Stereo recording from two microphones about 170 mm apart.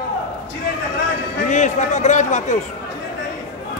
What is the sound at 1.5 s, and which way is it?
A man's voice, 45° left (ahead or behind).